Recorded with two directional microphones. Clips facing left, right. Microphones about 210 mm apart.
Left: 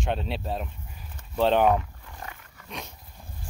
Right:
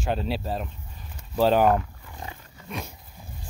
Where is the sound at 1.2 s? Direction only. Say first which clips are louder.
Right 2 dB; 5° right (ahead or behind).